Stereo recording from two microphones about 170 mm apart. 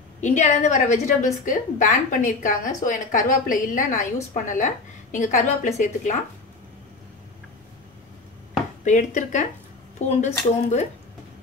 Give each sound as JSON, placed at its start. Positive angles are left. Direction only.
{"t": 0.2, "sound": "a woman's voice", "side_deg": 45}
{"t": 8.8, "sound": "a woman's voice", "side_deg": 45}